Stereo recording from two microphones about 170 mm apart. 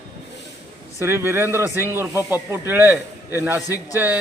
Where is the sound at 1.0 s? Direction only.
15° right (ahead or behind).